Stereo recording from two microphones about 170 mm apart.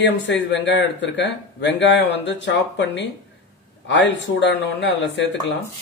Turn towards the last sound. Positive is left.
turn(degrees=90)